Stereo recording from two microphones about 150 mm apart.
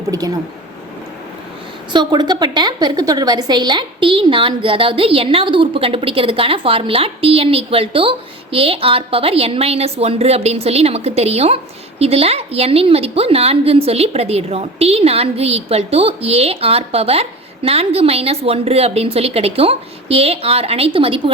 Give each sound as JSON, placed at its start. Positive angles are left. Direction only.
{"t": 0.1, "sound": "speech", "side_deg": -25}
{"t": 1.9, "sound": "a woman's voice", "side_deg": -30}